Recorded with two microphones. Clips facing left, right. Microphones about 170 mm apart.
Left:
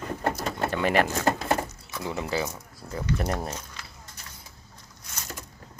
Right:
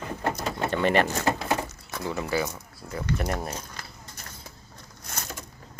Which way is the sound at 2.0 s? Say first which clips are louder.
Right 1 dB; 20° left (ahead or behind).